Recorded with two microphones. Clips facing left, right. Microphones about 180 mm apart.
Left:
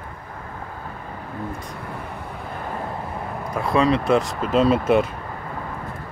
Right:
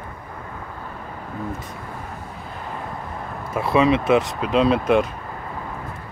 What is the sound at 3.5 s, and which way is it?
Speech, 5° right (ahead or behind).